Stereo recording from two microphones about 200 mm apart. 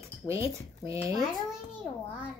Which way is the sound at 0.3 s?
15° right (ahead or behind).